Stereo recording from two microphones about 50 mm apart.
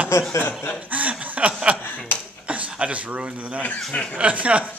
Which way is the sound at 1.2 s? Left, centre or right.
Right.